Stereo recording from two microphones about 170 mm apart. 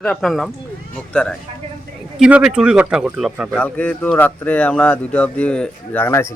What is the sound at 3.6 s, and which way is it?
Speech, 10° left (ahead or behind).